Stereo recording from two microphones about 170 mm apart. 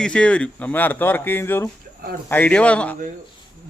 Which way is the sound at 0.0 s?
5° left (ahead or behind).